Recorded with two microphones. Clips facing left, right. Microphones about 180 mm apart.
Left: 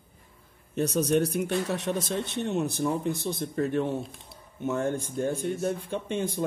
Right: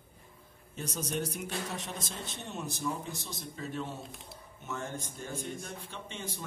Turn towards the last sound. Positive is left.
turn(degrees=55)  # may be behind; listen again after turning